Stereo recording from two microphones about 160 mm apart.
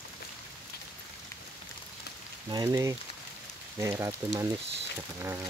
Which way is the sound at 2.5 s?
25° right (ahead or behind).